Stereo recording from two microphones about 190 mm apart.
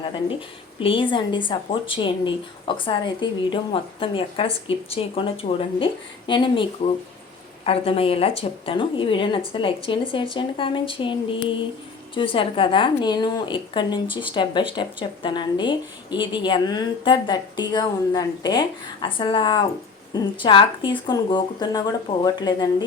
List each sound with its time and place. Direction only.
0.8 s a woman's voice: 25° left (ahead or behind)